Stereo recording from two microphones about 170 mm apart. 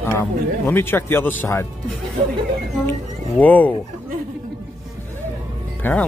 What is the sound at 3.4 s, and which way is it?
Speech, 10° left (ahead or behind).